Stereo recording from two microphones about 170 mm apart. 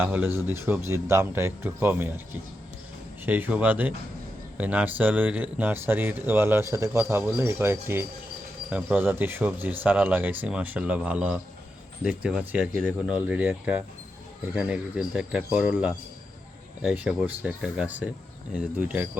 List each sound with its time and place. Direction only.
0.0 s speech: 10° right (ahead or behind)
3.2 s speech: 10° right (ahead or behind)